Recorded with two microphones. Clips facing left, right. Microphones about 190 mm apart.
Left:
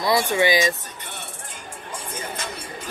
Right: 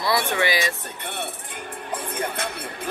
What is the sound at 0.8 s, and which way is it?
Music, 60° right (ahead or behind).